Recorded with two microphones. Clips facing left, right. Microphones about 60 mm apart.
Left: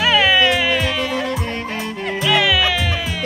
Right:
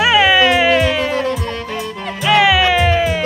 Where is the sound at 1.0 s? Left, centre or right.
Right.